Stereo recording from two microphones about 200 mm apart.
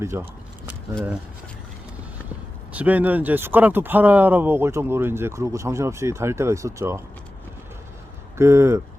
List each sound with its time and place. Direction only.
0.0 s speech: 15° right (ahead or behind)
2.7 s speech: 10° right (ahead or behind)
8.4 s speech: 15° right (ahead or behind)